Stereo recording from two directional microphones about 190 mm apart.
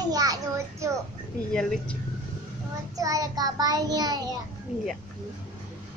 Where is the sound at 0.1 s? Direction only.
20° right (ahead or behind).